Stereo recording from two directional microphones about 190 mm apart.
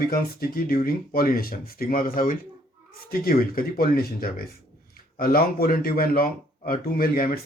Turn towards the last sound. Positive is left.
turn(degrees=50)  # may be behind; listen again after turning